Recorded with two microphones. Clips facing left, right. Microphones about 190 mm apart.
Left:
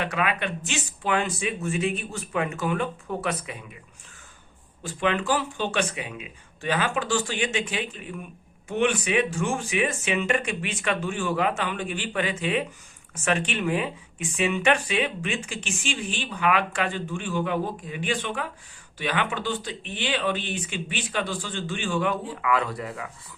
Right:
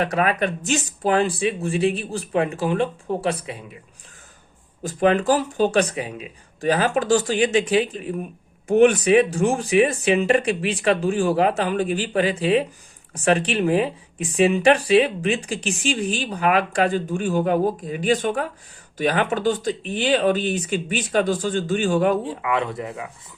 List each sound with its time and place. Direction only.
0.0 s speech: 40° right (ahead or behind)
4.8 s speech: 40° right (ahead or behind)
22.4 s speech: 25° right (ahead or behind)